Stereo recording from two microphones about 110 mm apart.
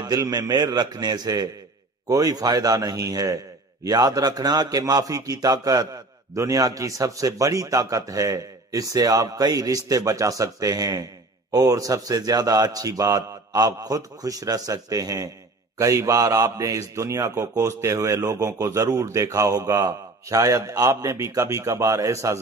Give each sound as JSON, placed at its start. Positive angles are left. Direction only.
{"t": 0.0, "sound": "a man's voice", "side_deg": -35}